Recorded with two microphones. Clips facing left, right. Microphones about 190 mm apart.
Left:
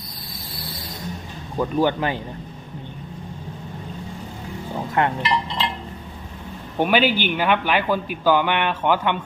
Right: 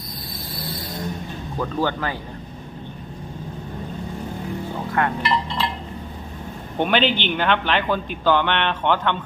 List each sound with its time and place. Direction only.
1.5 s a man's voice: 15° left (ahead or behind)
5.0 s speech: 20° left (ahead or behind)
6.7 s a man's voice: 10° left (ahead or behind)